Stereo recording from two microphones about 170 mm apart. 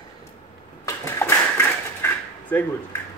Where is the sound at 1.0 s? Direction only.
15° left (ahead or behind).